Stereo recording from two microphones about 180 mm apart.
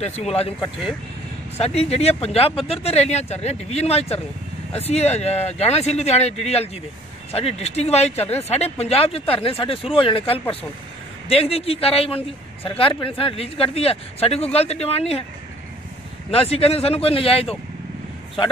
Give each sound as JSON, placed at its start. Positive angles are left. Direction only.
{"t": 0.0, "sound": "speech", "side_deg": 35}
{"t": 16.3, "sound": "speech", "side_deg": 35}